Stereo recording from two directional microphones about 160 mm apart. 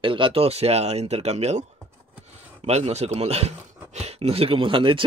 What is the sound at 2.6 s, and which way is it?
Speech, 40° right (ahead or behind).